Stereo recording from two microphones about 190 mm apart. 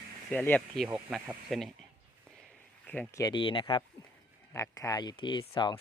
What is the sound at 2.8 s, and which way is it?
Speech, 10° left (ahead or behind).